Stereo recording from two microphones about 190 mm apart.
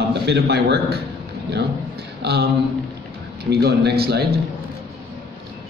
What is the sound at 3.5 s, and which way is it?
Speech, 60° right (ahead or behind).